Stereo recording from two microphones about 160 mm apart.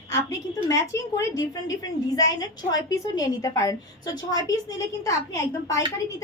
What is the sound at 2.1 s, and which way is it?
A woman's voice, 25° left (ahead or behind).